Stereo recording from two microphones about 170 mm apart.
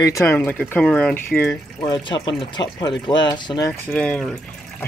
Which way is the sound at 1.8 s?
25° left (ahead or behind).